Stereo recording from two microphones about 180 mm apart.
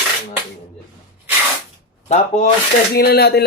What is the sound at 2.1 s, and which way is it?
Speech, 40° left (ahead or behind).